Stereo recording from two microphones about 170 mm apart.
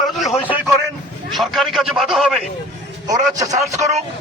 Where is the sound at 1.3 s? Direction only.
Centre (ahead or behind).